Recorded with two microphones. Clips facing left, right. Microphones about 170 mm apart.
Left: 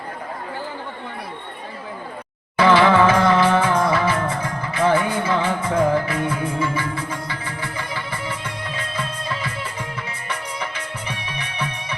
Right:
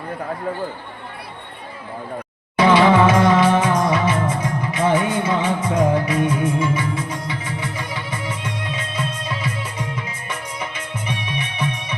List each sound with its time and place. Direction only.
2.6 s music: 15° right (ahead or behind)